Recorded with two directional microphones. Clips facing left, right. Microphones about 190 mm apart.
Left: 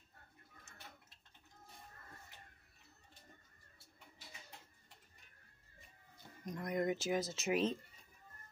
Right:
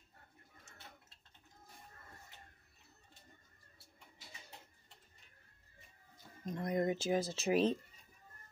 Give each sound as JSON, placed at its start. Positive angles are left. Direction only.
{"t": 6.4, "sound": "speech", "side_deg": -30}